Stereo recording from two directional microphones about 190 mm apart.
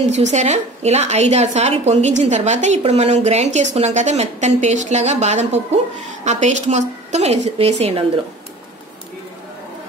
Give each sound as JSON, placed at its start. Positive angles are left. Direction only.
{"t": 0.1, "sound": "a woman's voice", "side_deg": -35}